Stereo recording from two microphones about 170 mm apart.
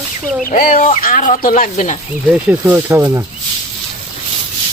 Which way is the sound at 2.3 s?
10° right (ahead or behind).